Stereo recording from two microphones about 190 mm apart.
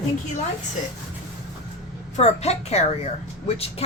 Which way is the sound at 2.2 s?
35° left (ahead or behind).